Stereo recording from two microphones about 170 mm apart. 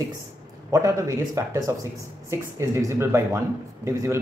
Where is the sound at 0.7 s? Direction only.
20° right (ahead or behind).